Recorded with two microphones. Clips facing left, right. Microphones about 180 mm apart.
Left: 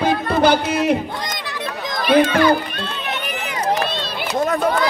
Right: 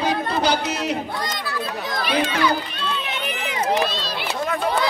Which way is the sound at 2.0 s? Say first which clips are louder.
Left 8 dB; 50° left (ahead or behind).